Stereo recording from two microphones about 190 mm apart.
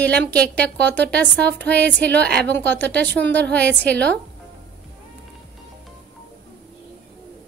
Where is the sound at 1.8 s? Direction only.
65° right (ahead or behind).